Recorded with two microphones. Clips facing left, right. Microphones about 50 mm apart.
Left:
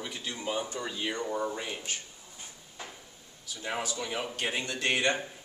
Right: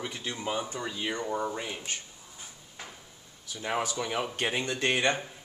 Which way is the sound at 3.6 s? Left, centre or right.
Right.